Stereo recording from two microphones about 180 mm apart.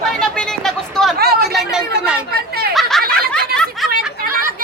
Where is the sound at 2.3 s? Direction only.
60° right (ahead or behind).